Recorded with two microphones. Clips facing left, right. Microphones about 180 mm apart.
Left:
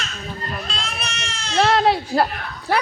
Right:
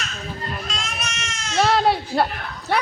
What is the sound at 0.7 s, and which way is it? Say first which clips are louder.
Goat: left 1 dB; 30° left (ahead or behind).